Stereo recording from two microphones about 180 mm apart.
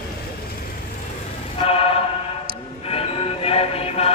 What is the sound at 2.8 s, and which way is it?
Music, 35° left (ahead or behind).